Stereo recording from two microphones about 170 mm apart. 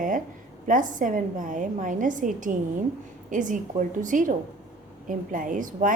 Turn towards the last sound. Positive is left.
turn(degrees=-50)  # may be behind; listen again after turning